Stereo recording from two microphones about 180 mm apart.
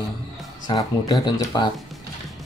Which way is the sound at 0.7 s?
20° left (ahead or behind).